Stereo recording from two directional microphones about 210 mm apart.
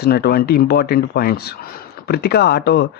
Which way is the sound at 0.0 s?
50° left (ahead or behind).